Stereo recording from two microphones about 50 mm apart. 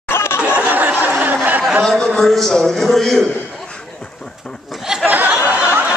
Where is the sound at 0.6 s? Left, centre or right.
Right.